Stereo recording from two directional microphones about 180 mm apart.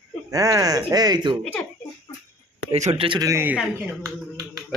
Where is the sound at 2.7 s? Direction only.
35° right (ahead or behind).